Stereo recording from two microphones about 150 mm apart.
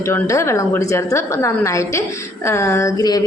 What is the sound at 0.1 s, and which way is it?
A woman's voice, 20° left (ahead or behind).